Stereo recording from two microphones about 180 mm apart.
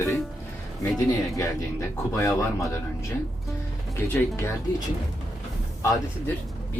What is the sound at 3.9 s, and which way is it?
Speech, 10° left (ahead or behind).